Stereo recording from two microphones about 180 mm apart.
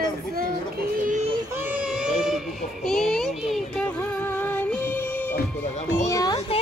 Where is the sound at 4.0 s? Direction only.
10° left (ahead or behind).